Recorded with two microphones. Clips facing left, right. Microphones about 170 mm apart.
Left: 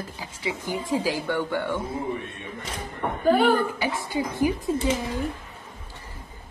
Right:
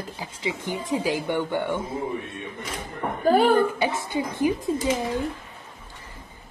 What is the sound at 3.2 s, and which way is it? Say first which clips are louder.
Speech: right 1 dB; 35° right (ahead or behind).